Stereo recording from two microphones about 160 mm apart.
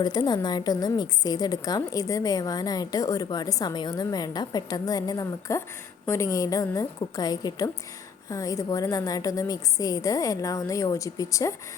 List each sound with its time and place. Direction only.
0.0 s a woman's voice: 25° left (ahead or behind)